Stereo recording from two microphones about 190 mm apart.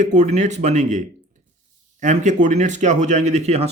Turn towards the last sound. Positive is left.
turn(degrees=-35)  # may be behind; listen again after turning